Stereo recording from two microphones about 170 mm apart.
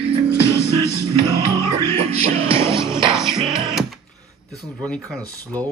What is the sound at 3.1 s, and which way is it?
Music, 5° right (ahead or behind).